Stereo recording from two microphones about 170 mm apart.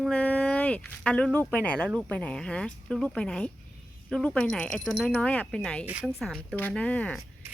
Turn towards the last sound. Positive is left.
turn(degrees=10)  # may be behind; listen again after turning